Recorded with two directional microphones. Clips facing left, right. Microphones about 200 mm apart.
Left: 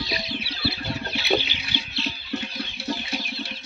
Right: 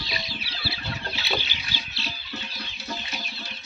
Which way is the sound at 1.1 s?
55° left (ahead or behind).